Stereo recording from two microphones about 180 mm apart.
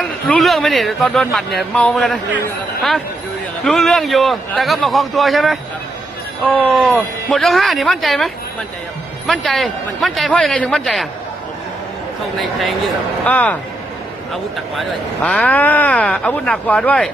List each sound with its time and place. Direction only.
0.0 s a man's voice: centre (ahead or behind)
3.6 s a man's voice: centre (ahead or behind)
9.3 s a man's voice: centre (ahead or behind)
12.4 s a man's voice: centre (ahead or behind)